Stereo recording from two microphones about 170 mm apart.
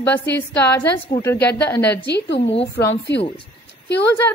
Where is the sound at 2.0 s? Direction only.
85° left.